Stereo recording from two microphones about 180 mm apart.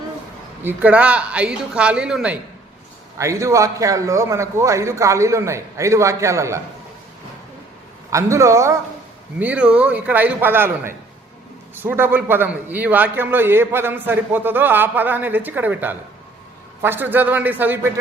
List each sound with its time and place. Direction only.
0.6 s a man's voice: 10° right (ahead or behind)
3.2 s a man's voice: 15° right (ahead or behind)
8.1 s a man's voice: 15° right (ahead or behind)